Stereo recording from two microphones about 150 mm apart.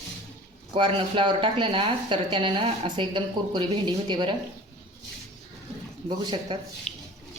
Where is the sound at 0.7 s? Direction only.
35° right (ahead or behind).